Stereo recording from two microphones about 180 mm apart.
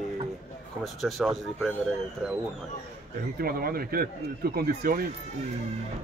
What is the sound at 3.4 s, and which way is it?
Speech, 55° right (ahead or behind).